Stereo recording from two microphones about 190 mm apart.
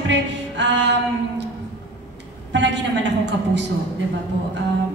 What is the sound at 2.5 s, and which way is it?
Speech, 70° right (ahead or behind).